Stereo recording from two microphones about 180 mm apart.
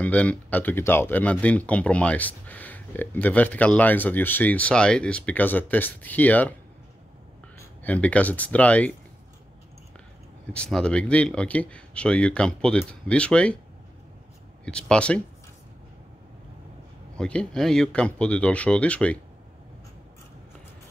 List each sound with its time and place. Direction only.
0.0 s speech: 5° left (ahead or behind)
7.5 s speech: 10° left (ahead or behind)
10.5 s speech: 5° left (ahead or behind)
14.6 s speech: 5° left (ahead or behind)
17.2 s speech: 5° left (ahead or behind)